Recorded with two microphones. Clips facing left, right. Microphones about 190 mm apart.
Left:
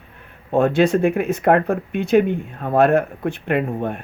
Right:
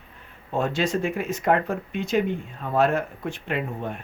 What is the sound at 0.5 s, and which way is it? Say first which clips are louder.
Speech: left 8 dB; 60° left (ahead or behind).